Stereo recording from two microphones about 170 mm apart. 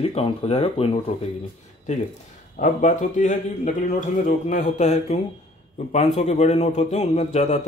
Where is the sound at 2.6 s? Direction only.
45° left (ahead or behind).